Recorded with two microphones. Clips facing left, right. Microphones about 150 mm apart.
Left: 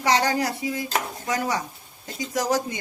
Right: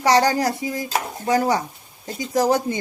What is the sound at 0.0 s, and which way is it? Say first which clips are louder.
Speech: right 5 dB; 40° right (ahead or behind).